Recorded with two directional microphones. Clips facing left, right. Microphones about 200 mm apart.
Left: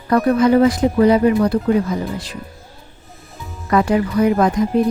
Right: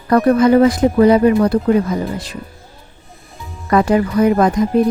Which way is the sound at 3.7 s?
45° right (ahead or behind).